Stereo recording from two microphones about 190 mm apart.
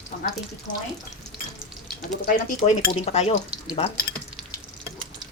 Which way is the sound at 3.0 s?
35° left (ahead or behind).